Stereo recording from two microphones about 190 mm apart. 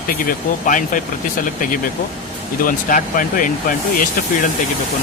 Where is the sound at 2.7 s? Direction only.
45° left (ahead or behind).